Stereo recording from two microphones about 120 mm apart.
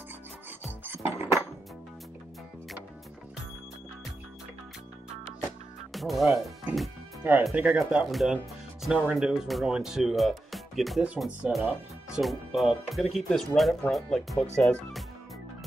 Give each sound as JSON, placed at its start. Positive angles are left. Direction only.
{"t": 0.8, "sound": "music", "side_deg": -20}
{"t": 5.9, "sound": "speech", "side_deg": 0}